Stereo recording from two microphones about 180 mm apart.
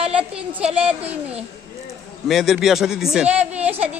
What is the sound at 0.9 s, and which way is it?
A woman's voice, 10° right (ahead or behind).